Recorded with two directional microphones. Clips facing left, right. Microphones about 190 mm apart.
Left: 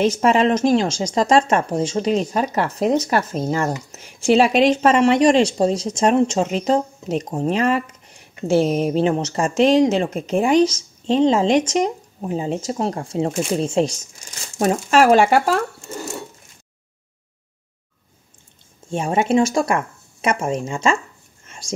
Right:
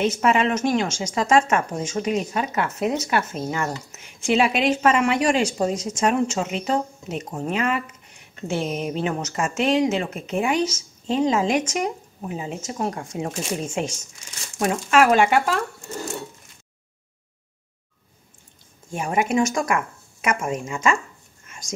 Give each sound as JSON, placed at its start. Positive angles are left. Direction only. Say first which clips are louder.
{"t": 0.0, "sound": "speech", "louder": "left 4 dB", "side_deg": 35}
{"t": 18.9, "sound": "speech", "louder": "left 4 dB", "side_deg": 25}
{"t": 21.5, "sound": "dog", "louder": "left 5 dB", "side_deg": 30}